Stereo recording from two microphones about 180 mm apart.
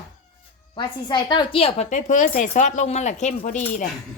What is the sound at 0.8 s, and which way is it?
A woman's voice, 25° left (ahead or behind).